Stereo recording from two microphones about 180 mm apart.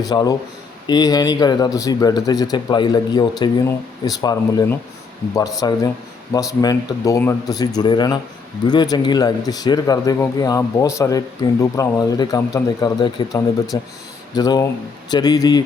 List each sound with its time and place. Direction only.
0.0 s speech: 20° left (ahead or behind)